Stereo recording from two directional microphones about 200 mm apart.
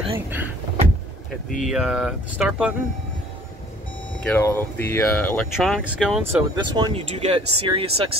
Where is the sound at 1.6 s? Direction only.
5° right (ahead or behind).